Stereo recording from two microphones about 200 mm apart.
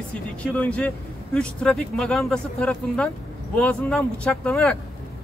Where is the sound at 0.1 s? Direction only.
5° left (ahead or behind).